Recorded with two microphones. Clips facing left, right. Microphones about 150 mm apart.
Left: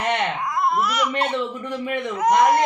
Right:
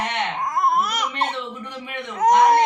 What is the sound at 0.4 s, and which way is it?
Baby cry, 45° right (ahead or behind).